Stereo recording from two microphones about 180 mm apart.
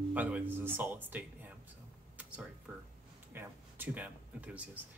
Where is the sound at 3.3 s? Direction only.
10° right (ahead or behind).